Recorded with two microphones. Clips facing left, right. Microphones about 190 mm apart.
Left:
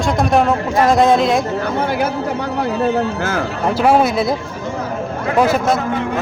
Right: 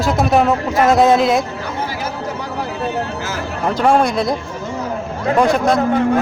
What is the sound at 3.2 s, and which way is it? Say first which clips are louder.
Speech: left 5 dB; 55° left (ahead or behind).